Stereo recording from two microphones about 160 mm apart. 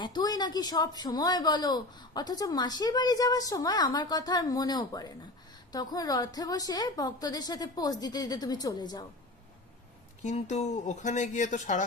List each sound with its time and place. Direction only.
0.0 s speech: 25° left (ahead or behind)
10.2 s speech: 45° left (ahead or behind)